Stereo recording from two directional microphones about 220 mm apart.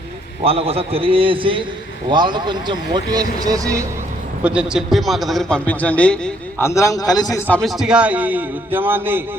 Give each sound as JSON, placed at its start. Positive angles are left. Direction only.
{"t": 0.4, "sound": "speech", "side_deg": -25}
{"t": 4.4, "sound": "a man's voice", "side_deg": -5}
{"t": 7.5, "sound": "a man's voice", "side_deg": 0}